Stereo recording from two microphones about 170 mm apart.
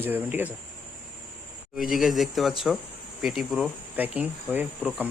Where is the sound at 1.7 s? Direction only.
Centre (ahead or behind).